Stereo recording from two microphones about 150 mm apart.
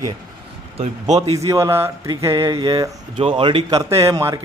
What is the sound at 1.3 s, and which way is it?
A man's voice, 20° right (ahead or behind).